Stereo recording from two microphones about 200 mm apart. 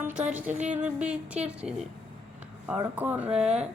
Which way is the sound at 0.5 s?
35° right (ahead or behind).